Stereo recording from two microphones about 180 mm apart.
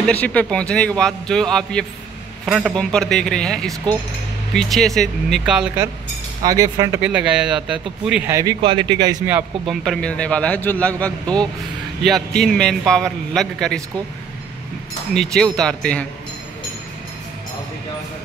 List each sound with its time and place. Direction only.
0.0 s a man's voice: 10° left (ahead or behind)
6.4 s speech: 20° right (ahead or behind)
7.0 s a man's voice: 5° right (ahead or behind)
8.3 s speech: 15° right (ahead or behind)
9.3 s a man's voice: centre (ahead or behind)
15.1 s a man's voice: 5° left (ahead or behind)